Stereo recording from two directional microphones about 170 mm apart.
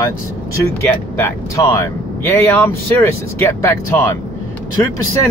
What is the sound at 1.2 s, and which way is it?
Speech, 15° left (ahead or behind).